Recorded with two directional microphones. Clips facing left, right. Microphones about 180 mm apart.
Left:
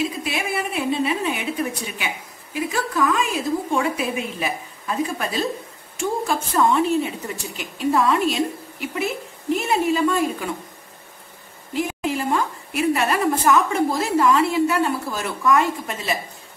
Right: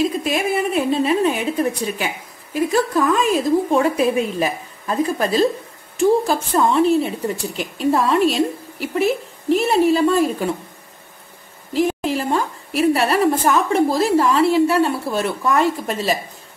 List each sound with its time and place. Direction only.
0.2 s a woman's voice: 40° right (ahead or behind)
11.7 s a woman's voice: 35° right (ahead or behind)